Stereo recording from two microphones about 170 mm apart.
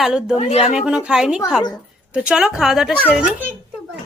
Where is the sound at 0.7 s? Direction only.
5° right (ahead or behind).